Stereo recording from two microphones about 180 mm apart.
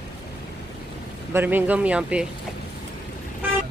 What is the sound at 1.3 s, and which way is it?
Speech, 10° right (ahead or behind).